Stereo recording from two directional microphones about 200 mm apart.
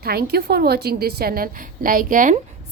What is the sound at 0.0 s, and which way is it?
A woman's voice, 50° right (ahead or behind).